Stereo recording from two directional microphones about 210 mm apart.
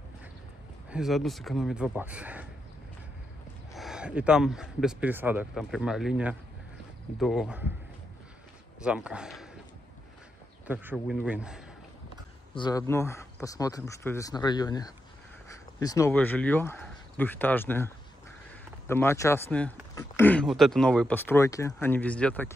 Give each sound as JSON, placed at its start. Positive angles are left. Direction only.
{"t": 0.8, "sound": "speech", "side_deg": -5}
{"t": 3.7, "sound": "speech", "side_deg": 0}
{"t": 8.8, "sound": "speech", "side_deg": -5}
{"t": 10.7, "sound": "speech", "side_deg": -10}
{"t": 12.5, "sound": "speech", "side_deg": 20}